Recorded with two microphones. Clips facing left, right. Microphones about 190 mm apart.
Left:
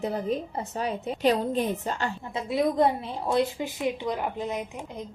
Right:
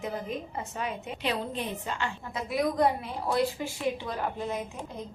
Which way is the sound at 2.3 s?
25° left (ahead or behind).